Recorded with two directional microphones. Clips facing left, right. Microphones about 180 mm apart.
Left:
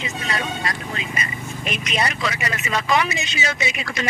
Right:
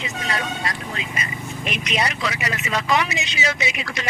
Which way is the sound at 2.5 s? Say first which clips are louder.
Left 1 dB; 45° left (ahead or behind).